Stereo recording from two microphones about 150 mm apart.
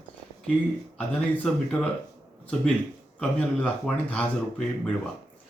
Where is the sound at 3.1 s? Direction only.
10° left (ahead or behind).